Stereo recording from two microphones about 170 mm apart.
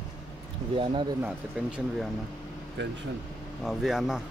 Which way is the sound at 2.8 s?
90° right.